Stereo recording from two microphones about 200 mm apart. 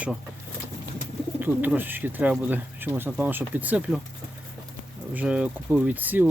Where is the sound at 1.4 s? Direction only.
10° right (ahead or behind).